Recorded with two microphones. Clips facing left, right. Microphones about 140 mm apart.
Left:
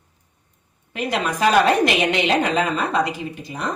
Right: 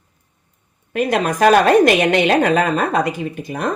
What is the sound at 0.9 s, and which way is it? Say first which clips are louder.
A woman's voice: right 6 dB; 50° right (ahead or behind).